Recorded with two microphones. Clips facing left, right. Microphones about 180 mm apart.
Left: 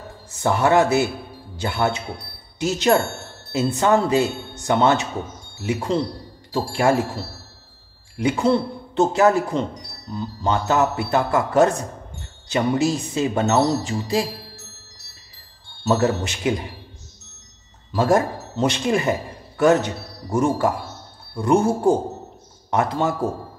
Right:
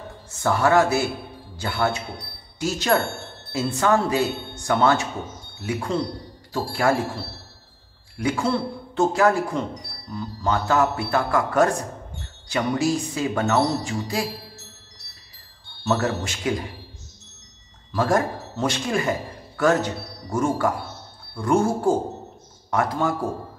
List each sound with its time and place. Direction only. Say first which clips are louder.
0.3 s a man's voice: left 1 dB; 20° left (ahead or behind)
8.2 s speech: left 4 dB; 20° left (ahead or behind)
15.9 s speech: left 4 dB; 20° left (ahead or behind)
17.9 s speech: left 3 dB; 20° left (ahead or behind)